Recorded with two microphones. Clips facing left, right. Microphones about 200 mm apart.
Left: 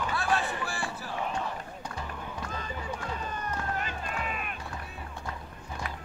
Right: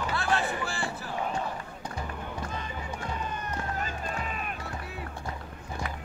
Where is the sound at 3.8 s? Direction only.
40° right (ahead or behind).